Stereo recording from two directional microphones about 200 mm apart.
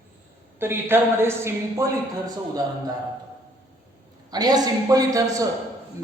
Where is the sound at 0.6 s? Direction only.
10° right (ahead or behind).